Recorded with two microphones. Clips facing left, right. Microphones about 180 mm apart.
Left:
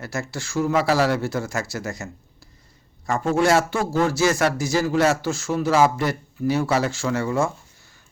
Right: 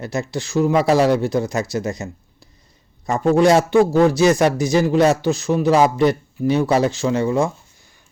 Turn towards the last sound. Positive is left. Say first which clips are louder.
# right 2 dB
turn(degrees=-15)  # may be behind; listen again after turning